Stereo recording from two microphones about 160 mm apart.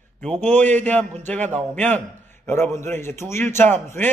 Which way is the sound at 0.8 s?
10° left (ahead or behind).